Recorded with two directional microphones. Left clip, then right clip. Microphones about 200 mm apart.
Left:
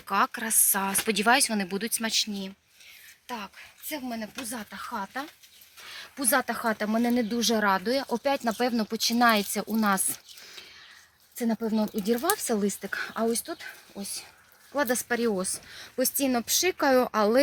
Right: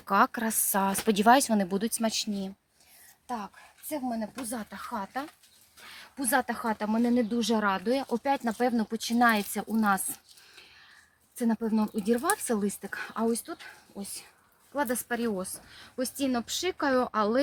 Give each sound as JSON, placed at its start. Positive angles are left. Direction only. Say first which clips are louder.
{"t": 0.0, "sound": "speech", "louder": "right 1 dB", "side_deg": -40}
{"t": 3.2, "sound": "speech", "louder": "right 1 dB", "side_deg": -45}
{"t": 5.0, "sound": "speech", "louder": "even", "side_deg": 0}
{"t": 5.9, "sound": "speech", "louder": "left 2 dB", "side_deg": 30}
{"t": 14.7, "sound": "speech", "louder": "left 3 dB", "side_deg": 35}